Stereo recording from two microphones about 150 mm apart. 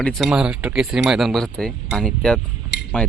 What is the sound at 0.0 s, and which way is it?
Speech, centre (ahead or behind).